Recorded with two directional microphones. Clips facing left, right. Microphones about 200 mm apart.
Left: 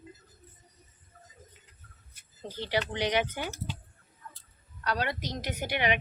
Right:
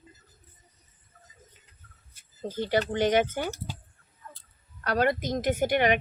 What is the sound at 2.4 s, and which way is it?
A woman's voice, 45° right (ahead or behind).